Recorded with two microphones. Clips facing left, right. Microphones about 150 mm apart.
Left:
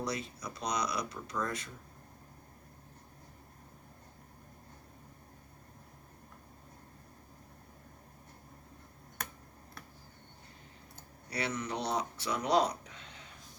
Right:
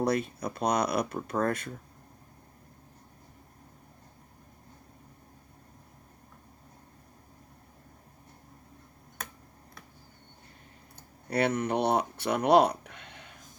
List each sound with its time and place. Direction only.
0.0 s speech: 55° right (ahead or behind)
11.3 s speech: 55° right (ahead or behind)